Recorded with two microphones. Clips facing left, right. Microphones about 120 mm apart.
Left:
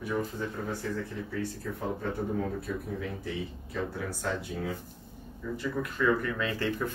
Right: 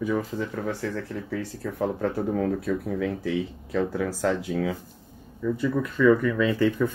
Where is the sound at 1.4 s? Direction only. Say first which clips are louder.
Right 6 dB; 90° right.